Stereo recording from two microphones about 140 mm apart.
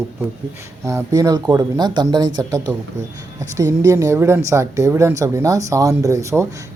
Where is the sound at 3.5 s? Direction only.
25° right (ahead or behind).